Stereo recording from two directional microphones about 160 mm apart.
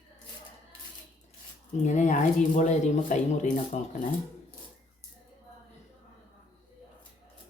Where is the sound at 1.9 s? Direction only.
50° left (ahead or behind).